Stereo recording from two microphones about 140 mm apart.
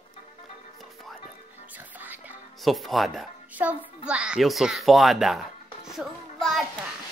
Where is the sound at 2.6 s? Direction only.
Centre (ahead or behind).